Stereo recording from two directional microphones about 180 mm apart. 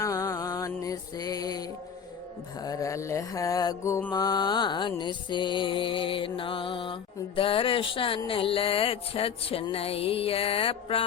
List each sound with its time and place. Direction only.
0.0 s music: 15° left (ahead or behind)
2.6 s mantra: 20° left (ahead or behind)